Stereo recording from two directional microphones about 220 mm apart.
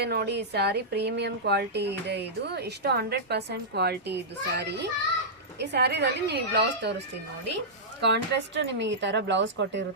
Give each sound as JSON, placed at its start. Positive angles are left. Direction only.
{"t": 0.0, "sound": "speech", "side_deg": -45}
{"t": 8.0, "sound": "speech", "side_deg": -50}